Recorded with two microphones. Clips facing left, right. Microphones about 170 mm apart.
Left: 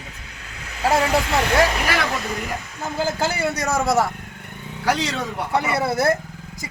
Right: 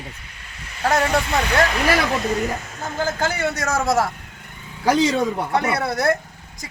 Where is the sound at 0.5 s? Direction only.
75° left (ahead or behind).